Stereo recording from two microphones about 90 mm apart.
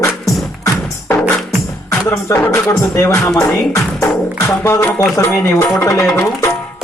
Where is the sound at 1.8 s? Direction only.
35° left (ahead or behind).